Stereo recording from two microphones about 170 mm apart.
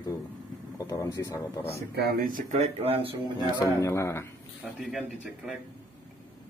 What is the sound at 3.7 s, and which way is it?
Speech, 20° left (ahead or behind).